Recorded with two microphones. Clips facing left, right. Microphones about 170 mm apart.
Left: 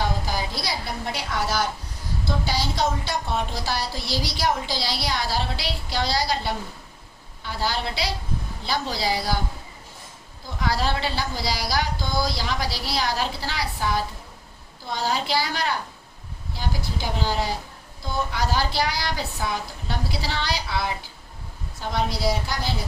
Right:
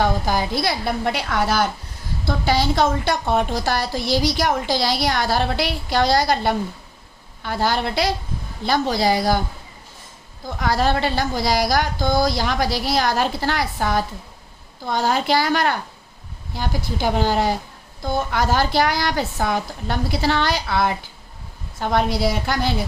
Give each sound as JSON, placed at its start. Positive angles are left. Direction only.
{"t": 0.0, "sound": "a woman's voice", "side_deg": -55}
{"t": 10.6, "sound": "a woman's voice", "side_deg": -50}